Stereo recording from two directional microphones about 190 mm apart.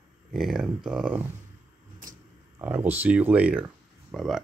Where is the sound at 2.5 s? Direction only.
10° right (ahead or behind).